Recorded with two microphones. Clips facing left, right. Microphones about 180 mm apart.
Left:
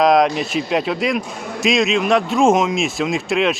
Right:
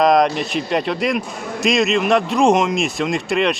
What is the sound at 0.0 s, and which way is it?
Speech, centre (ahead or behind).